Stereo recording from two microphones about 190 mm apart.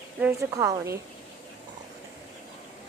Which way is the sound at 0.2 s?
15° right (ahead or behind).